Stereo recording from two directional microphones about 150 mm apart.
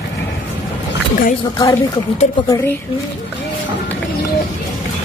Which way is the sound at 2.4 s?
25° left (ahead or behind).